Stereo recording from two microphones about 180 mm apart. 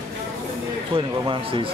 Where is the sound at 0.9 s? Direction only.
30° right (ahead or behind).